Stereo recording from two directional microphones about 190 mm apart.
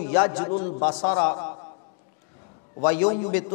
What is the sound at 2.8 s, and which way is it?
Speech, 15° left (ahead or behind).